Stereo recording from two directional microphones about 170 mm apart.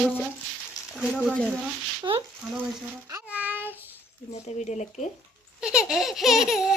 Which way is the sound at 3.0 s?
10° right (ahead or behind).